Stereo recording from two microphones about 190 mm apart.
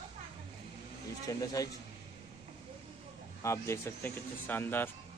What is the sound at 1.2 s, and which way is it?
Speech, 20° left (ahead or behind).